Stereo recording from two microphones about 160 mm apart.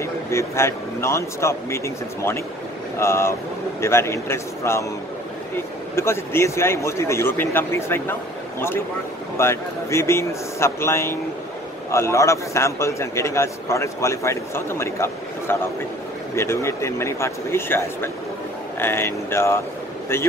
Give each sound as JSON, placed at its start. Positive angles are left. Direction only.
{"t": 0.0, "sound": "a man's voice", "side_deg": 15}
{"t": 3.0, "sound": "a man's voice", "side_deg": 15}
{"t": 5.9, "sound": "a man's voice", "side_deg": 15}